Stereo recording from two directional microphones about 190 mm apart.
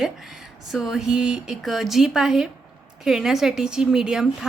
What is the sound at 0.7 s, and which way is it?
A woman's voice, centre (ahead or behind).